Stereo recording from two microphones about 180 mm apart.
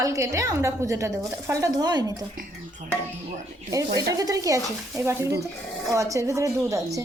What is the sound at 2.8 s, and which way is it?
Speech, 40° right (ahead or behind).